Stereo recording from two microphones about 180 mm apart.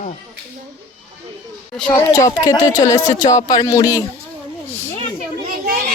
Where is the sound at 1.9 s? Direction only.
15° left (ahead or behind).